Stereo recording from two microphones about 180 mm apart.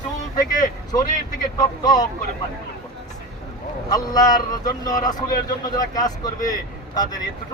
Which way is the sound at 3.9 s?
20° left (ahead or behind).